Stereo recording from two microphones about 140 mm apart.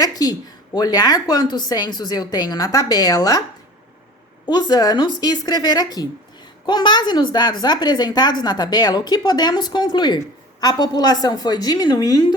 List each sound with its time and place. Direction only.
0.0 s a woman's voice: 25° left (ahead or behind)
4.4 s a woman's voice: 30° left (ahead or behind)